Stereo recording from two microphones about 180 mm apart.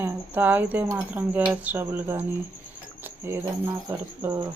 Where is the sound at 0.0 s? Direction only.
10° right (ahead or behind).